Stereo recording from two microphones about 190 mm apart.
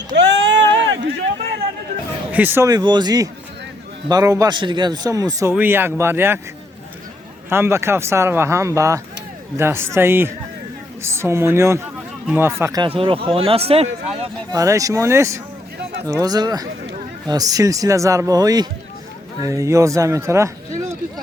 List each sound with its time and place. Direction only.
0.2 s a sound: 70° right (ahead or behind)
2.3 s speech: 10° right (ahead or behind)
7.5 s speech: 15° right (ahead or behind); by 14.3 s 30° right (ahead or behind)
14.5 s speech: 15° right (ahead or behind)